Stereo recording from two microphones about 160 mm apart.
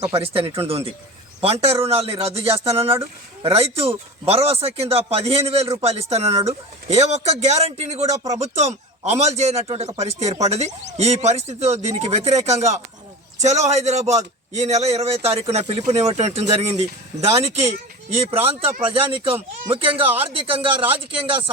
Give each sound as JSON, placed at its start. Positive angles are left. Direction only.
{"t": 0.1, "sound": "a man's voice", "side_deg": -35}